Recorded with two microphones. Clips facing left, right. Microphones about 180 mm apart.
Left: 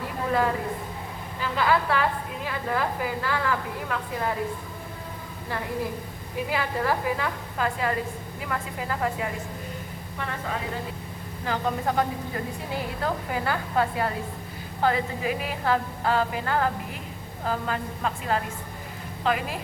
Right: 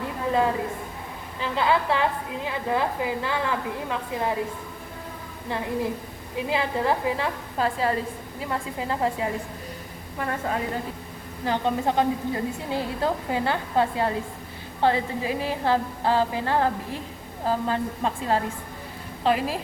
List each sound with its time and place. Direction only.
1.4 s a woman's voice: 25° right (ahead or behind)
6.5 s a woman's voice: 25° right (ahead or behind)
10.2 s a woman's voice: 40° right (ahead or behind)
11.4 s a woman's voice: 30° right (ahead or behind)